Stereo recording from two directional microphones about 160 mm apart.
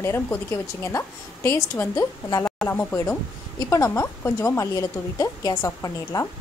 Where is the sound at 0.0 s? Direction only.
15° left (ahead or behind).